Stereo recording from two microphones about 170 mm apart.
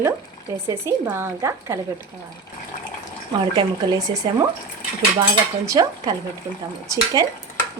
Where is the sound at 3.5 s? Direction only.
20° right (ahead or behind).